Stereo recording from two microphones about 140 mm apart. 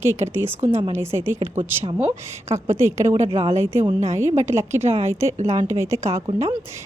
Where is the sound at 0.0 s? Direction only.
15° right (ahead or behind).